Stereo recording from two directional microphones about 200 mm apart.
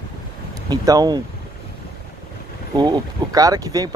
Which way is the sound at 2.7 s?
20° right (ahead or behind).